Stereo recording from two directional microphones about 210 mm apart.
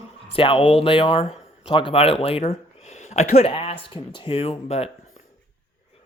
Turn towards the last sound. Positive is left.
turn(degrees=30)  # may be behind; listen again after turning